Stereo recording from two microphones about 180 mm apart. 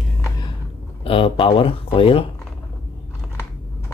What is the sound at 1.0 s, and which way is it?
Speech, 30° left (ahead or behind).